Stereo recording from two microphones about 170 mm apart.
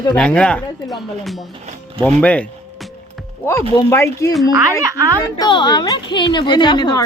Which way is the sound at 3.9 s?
15° left (ahead or behind).